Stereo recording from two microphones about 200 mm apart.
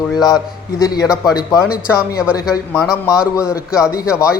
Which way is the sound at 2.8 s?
5° right (ahead or behind).